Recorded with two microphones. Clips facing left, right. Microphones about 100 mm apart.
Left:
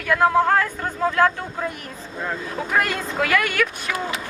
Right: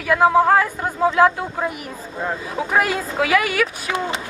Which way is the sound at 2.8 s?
5° right (ahead or behind).